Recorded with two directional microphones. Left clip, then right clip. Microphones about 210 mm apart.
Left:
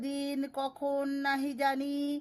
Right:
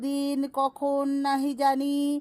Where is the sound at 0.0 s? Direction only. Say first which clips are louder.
Right 6 dB; 20° right (ahead or behind).